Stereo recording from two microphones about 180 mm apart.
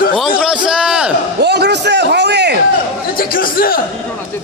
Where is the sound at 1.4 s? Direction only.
65° right (ahead or behind).